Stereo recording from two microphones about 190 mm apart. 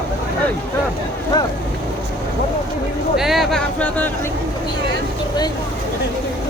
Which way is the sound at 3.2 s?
Centre (ahead or behind).